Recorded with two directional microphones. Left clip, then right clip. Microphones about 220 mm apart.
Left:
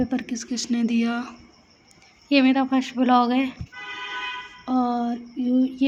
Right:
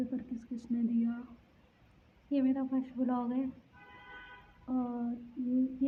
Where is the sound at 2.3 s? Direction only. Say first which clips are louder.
Left 13 dB; 30° left (ahead or behind).